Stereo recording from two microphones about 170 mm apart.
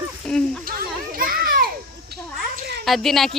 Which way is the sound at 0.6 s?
60° right (ahead or behind).